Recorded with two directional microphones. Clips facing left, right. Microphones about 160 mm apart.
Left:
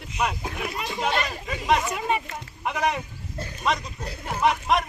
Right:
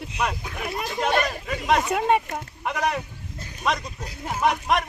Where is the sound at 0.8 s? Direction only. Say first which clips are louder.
Right 4 dB; centre (ahead or behind).